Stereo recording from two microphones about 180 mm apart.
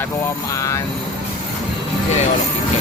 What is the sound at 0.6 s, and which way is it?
Vehicle, 15° left (ahead or behind).